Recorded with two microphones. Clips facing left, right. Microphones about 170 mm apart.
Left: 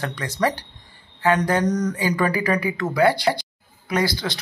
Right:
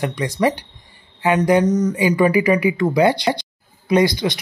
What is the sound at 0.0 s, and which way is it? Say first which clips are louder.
Speech: right 5 dB; 15° right (ahead or behind).